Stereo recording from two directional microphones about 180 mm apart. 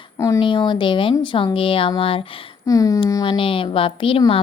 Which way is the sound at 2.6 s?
20° left (ahead or behind).